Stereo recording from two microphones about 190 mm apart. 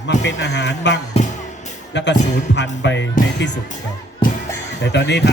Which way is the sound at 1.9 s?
65° left (ahead or behind).